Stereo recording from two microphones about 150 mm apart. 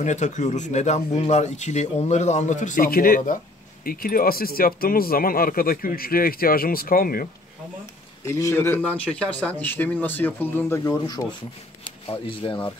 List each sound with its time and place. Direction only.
0.0 s speech: 50° left (ahead or behind); by 7.2 s 75° left (ahead or behind)
8.3 s speech: 20° left (ahead or behind)
12.1 s speech: 35° left (ahead or behind)